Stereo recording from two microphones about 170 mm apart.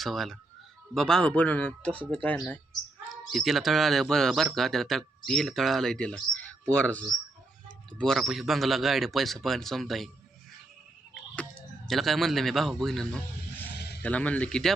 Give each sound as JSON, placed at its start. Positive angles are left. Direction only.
{"t": 0.0, "sound": "a man's voice", "side_deg": 0}
{"t": 11.9, "sound": "a man's voice", "side_deg": 0}
{"t": 13.7, "sound": "music", "side_deg": 75}
{"t": 14.0, "sound": "speech", "side_deg": 10}